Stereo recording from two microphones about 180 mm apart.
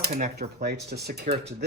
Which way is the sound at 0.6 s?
65° right (ahead or behind).